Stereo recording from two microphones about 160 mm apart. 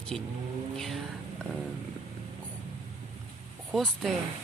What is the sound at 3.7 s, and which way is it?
Speech, centre (ahead or behind).